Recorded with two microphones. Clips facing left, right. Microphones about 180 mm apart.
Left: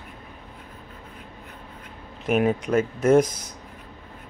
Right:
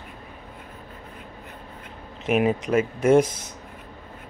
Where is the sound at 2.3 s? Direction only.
5° right (ahead or behind).